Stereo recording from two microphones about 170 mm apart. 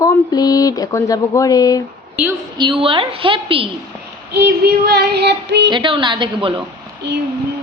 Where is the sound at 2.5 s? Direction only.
30° right (ahead or behind).